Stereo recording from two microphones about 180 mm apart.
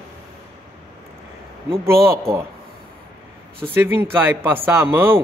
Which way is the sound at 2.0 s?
15° right (ahead or behind).